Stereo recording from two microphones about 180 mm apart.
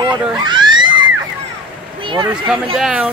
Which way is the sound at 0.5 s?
25° right (ahead or behind).